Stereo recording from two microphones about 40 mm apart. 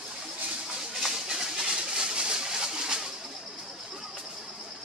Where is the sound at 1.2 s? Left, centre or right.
Centre.